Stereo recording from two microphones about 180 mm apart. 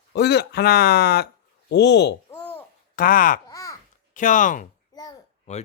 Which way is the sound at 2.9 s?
50° left (ahead or behind).